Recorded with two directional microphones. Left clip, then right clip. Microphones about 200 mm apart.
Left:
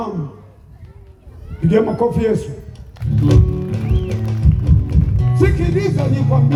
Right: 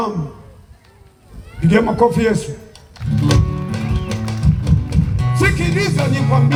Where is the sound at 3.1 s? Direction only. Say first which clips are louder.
Left 1 dB; 20° right (ahead or behind).